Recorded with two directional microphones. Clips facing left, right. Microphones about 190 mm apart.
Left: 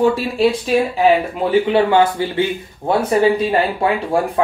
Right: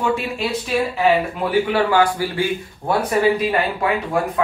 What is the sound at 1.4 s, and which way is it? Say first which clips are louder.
Speech: left 4 dB; 25° left (ahead or behind).